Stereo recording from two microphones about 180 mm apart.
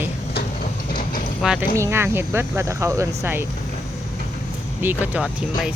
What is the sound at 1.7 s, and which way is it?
Speech, 15° right (ahead or behind).